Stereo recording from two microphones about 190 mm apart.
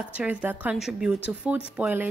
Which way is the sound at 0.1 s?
5° right (ahead or behind).